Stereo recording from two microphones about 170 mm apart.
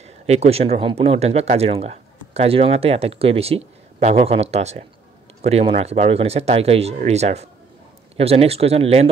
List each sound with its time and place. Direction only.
0.0 s speech: 40° right (ahead or behind)